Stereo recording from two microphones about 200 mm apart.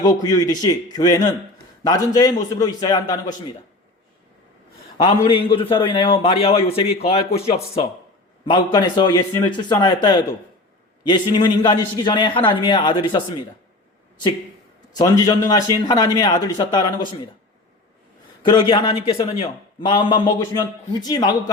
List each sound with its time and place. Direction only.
0.0 s a man's voice: 20° left (ahead or behind)
5.0 s a man's voice: 25° left (ahead or behind)
8.4 s a man's voice: 20° left (ahead or behind)
14.9 s a man's voice: 15° left (ahead or behind)
18.4 s a man's voice: 25° left (ahead or behind)